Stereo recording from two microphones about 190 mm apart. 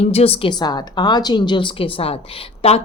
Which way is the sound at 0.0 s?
30° left (ahead or behind).